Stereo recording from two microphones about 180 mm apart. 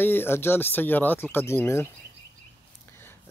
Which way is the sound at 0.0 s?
10° left (ahead or behind).